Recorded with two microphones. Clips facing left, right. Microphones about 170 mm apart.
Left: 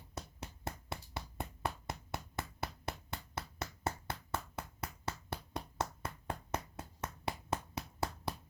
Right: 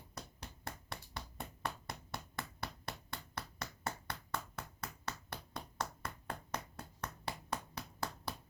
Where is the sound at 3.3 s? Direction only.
25° left (ahead or behind).